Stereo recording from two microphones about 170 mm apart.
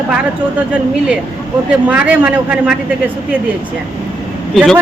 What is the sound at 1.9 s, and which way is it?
Speech, 10° right (ahead or behind).